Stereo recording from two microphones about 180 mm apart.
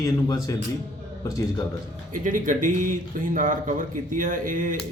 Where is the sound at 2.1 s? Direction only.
45° right (ahead or behind).